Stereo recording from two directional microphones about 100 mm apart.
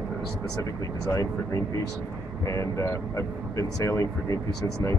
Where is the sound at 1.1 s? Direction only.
35° left (ahead or behind).